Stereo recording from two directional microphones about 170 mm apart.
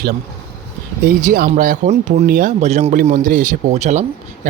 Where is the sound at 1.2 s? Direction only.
55° right (ahead or behind).